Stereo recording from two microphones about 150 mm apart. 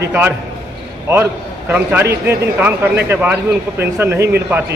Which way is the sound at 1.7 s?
15° right (ahead or behind).